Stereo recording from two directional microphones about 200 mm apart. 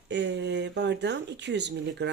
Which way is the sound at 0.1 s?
60° right (ahead or behind).